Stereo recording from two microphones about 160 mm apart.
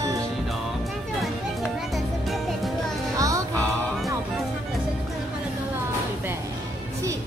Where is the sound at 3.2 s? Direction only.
20° right (ahead or behind).